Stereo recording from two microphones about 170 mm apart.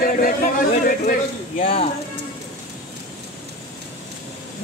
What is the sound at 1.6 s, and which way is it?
Speech, 35° left (ahead or behind).